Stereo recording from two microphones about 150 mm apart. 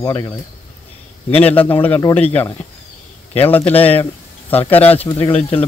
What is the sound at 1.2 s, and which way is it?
Speech, 10° left (ahead or behind).